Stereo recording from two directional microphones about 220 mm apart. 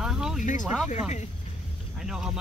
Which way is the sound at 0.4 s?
35° left (ahead or behind).